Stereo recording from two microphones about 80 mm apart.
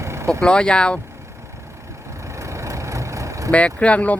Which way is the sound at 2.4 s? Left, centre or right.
Right.